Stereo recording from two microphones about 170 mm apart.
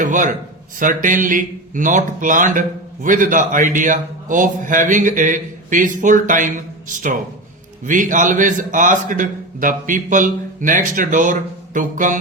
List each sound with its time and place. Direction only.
0.0 s speech: 50° right (ahead or behind)